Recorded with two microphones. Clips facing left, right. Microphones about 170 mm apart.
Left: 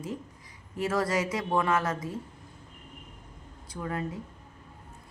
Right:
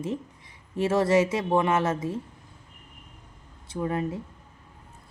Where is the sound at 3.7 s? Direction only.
25° right (ahead or behind).